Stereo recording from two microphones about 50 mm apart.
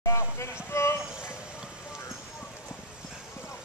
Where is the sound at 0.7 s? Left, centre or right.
Left.